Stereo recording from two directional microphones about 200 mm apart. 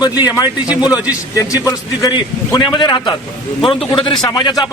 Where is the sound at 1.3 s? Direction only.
15° left (ahead or behind).